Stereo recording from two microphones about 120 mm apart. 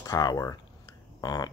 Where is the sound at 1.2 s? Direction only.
35° left (ahead or behind).